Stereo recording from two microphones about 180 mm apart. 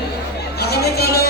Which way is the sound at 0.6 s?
60° left (ahead or behind).